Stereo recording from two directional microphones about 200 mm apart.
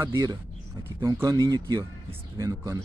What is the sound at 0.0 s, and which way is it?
Speech, 20° right (ahead or behind).